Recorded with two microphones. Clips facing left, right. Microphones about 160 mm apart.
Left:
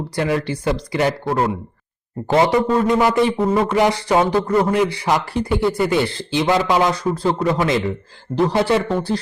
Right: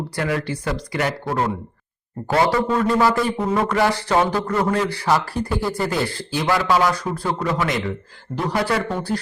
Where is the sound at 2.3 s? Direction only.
20° left (ahead or behind).